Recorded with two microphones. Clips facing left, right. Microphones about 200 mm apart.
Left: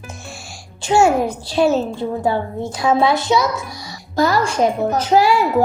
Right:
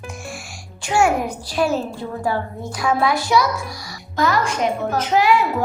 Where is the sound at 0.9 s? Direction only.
25° left (ahead or behind).